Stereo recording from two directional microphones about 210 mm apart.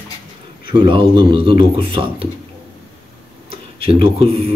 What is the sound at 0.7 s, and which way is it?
Speech, 25° right (ahead or behind).